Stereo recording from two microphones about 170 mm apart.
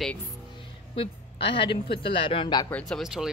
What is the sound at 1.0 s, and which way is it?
A woman's voice, 30° left (ahead or behind).